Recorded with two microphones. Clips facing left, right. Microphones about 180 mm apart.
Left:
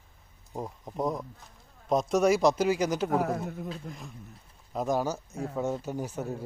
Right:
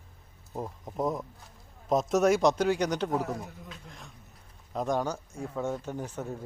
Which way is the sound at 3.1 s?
55° left (ahead or behind).